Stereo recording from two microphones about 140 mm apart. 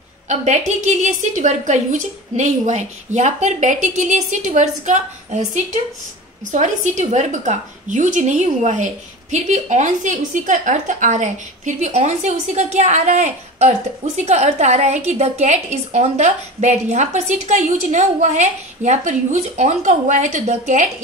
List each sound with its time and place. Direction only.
0.3 s a woman's voice: 55° right (ahead or behind)